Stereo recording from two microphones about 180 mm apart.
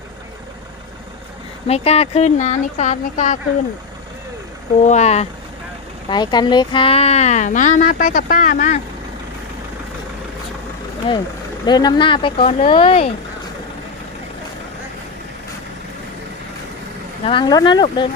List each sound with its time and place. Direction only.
1.6 s speech: 35° left (ahead or behind)
4.8 s speech: 40° left (ahead or behind)
6.1 s speech: 25° left (ahead or behind); by 8.8 s 45° left (ahead or behind)
11.6 s speech: 25° left (ahead or behind)
17.2 s speech: 25° left (ahead or behind)